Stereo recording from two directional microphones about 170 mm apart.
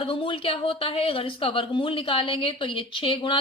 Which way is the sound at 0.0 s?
30° left (ahead or behind).